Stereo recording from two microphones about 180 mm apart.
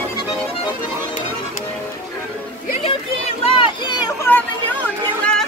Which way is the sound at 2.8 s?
30° left (ahead or behind).